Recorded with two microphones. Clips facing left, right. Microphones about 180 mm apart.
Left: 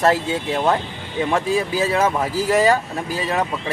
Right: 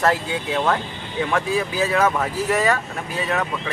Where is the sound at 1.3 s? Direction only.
30° left (ahead or behind).